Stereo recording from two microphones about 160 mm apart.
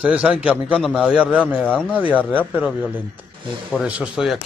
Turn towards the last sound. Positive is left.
turn(degrees=-5)  # may be behind; listen again after turning